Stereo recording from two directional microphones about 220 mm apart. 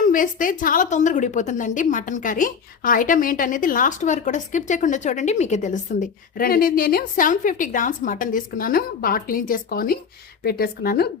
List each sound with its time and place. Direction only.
0.0 s a woman's voice: 35° left (ahead or behind)